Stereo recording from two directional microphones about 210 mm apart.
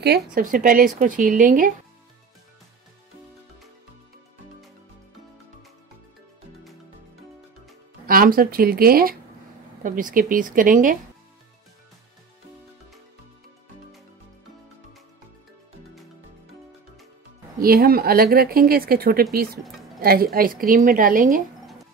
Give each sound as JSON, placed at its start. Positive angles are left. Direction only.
{"t": 0.0, "sound": "speech", "side_deg": -45}
{"t": 8.1, "sound": "speech", "side_deg": -45}
{"t": 17.6, "sound": "speech", "side_deg": -45}